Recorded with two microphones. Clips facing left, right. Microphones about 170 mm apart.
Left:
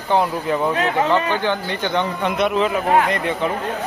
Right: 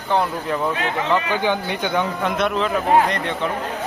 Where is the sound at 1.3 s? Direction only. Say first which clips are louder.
Even; 10° right (ahead or behind).